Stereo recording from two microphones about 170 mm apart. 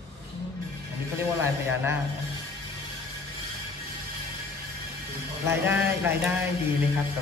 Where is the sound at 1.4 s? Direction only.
15° right (ahead or behind).